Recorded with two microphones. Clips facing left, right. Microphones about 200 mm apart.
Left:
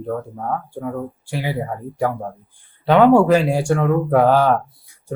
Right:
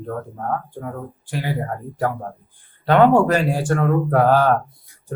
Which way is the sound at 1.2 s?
15° left (ahead or behind).